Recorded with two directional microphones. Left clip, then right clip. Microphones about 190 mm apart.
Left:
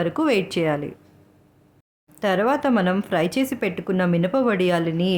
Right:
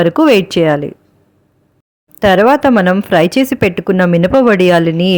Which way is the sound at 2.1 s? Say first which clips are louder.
Right 12 dB; 35° right (ahead or behind).